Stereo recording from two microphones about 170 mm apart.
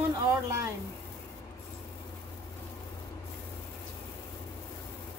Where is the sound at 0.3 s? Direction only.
15° right (ahead or behind).